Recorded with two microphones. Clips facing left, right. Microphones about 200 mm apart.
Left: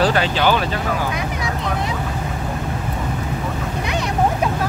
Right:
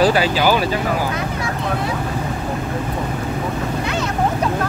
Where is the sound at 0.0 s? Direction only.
10° right (ahead or behind).